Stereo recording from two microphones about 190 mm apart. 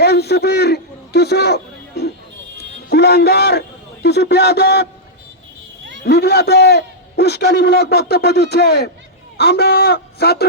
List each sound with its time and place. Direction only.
0.0 s a man's voice: 60° left (ahead or behind)
6.1 s a man's voice: 60° left (ahead or behind)